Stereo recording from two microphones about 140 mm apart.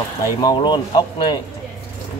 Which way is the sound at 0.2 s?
25° left (ahead or behind).